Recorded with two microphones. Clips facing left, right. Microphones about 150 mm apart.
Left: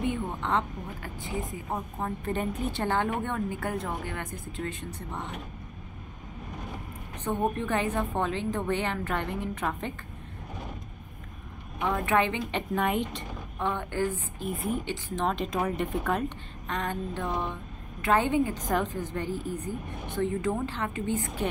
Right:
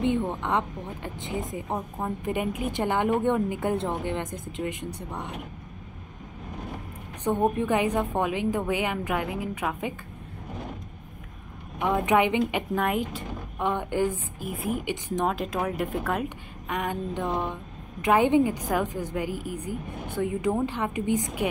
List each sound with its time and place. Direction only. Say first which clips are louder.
0.0 s speech: right 5 dB; 20° right (ahead or behind)
7.2 s speech: right 5 dB; 15° right (ahead or behind)
11.8 s speech: right 3 dB; 15° right (ahead or behind)
13.6 s speech: right 3 dB; 15° right (ahead or behind)
14.5 s speech: right 1 dB; centre (ahead or behind)
14.9 s speech: right 3 dB; 15° right (ahead or behind)
15.3 s speech: right 1 dB; 5° right (ahead or behind)